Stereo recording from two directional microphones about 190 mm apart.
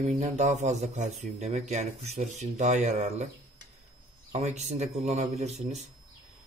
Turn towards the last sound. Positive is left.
turn(degrees=-35)  # may be behind; listen again after turning